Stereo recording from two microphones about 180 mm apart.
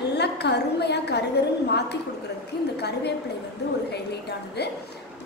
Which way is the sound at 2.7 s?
65° left (ahead or behind).